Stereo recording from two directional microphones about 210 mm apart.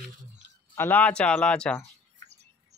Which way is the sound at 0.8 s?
10° left (ahead or behind).